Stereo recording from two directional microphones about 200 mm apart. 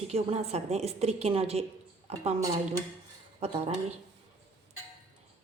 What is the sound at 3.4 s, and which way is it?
Speech, 30° right (ahead or behind).